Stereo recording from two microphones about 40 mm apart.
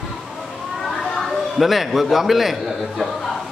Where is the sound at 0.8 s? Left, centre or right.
Centre.